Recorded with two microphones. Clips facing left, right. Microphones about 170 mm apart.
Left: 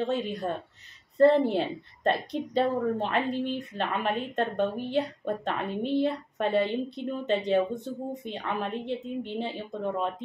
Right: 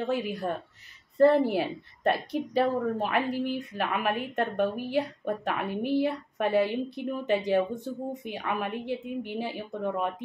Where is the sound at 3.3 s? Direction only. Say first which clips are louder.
Even; 10° right (ahead or behind).